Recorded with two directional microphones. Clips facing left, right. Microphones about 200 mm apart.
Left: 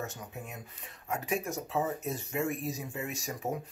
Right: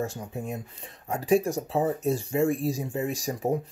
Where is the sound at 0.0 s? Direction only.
30° right (ahead or behind).